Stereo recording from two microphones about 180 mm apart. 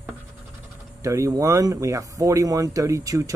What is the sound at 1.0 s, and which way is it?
Speech, 15° right (ahead or behind).